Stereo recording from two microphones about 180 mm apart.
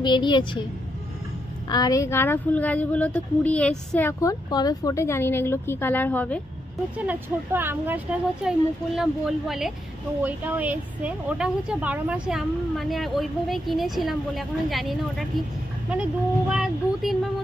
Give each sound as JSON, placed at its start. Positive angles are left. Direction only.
{"t": 0.0, "sound": "a woman's voice", "side_deg": 25}
{"t": 1.7, "sound": "speech", "side_deg": 20}
{"t": 7.0, "sound": "a woman's voice", "side_deg": -10}